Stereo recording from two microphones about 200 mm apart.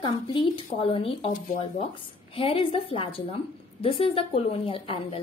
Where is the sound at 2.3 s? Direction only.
25° left (ahead or behind).